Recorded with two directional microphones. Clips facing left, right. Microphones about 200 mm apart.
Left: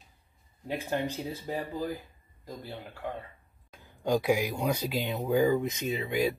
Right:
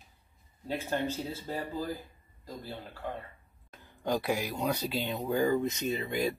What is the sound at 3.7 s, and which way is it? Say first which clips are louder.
Speech: left 3 dB; 10° left (ahead or behind).